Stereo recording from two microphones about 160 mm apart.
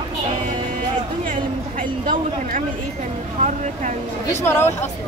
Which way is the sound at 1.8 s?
60° right (ahead or behind).